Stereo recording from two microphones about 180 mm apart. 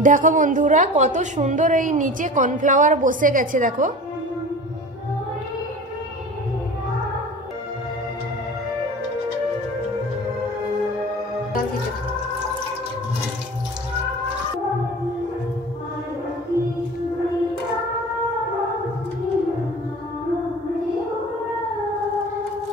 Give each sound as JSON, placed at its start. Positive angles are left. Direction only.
{"t": 0.0, "sound": "a woman's voice", "side_deg": -45}